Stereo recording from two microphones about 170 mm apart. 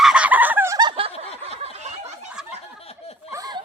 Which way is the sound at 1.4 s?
40° right (ahead or behind).